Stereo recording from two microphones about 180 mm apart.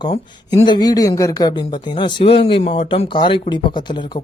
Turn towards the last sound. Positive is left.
turn(degrees=25)  # may be behind; listen again after turning